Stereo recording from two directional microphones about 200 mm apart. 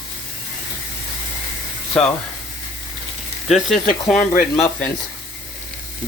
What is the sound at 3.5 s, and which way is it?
Speech, centre (ahead or behind).